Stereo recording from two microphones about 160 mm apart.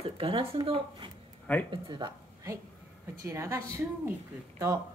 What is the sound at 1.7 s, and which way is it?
A woman's voice, 30° right (ahead or behind).